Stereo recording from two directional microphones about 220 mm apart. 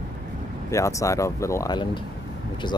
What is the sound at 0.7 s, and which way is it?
Speech, 15° left (ahead or behind).